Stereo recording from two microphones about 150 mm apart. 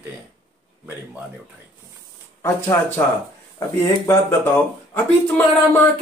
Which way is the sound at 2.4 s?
15° left (ahead or behind).